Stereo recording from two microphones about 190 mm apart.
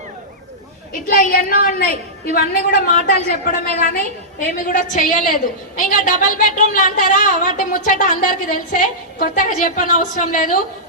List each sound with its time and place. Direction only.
1.0 s a woman's voice: 50° left (ahead or behind)